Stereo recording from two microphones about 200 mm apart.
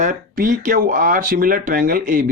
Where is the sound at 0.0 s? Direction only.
45° right (ahead or behind).